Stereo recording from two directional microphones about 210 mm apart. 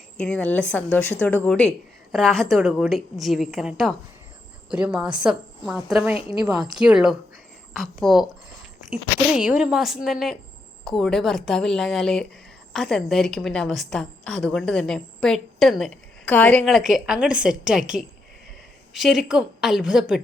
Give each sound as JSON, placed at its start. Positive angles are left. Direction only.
{"t": 0.2, "sound": "a woman's voice", "side_deg": 5}
{"t": 6.1, "sound": "speech", "side_deg": 25}
{"t": 6.4, "sound": "a woman's voice", "side_deg": 0}